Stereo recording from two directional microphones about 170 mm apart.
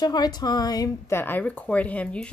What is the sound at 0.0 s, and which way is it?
A woman's voice, 25° left (ahead or behind).